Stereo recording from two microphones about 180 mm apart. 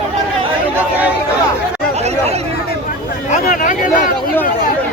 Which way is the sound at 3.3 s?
45° left (ahead or behind).